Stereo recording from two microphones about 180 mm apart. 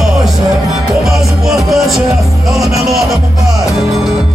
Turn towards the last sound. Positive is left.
turn(degrees=0)  # may be behind; listen again after turning